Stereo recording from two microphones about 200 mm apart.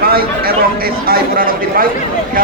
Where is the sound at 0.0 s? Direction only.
50° right (ahead or behind).